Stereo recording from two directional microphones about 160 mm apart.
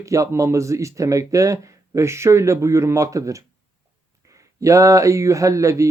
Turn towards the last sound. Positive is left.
turn(degrees=-20)  # may be behind; listen again after turning